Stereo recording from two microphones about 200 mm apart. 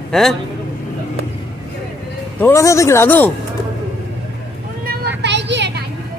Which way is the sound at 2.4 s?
15° left (ahead or behind).